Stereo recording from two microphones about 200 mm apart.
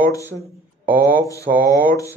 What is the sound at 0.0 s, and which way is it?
Speech, 15° left (ahead or behind).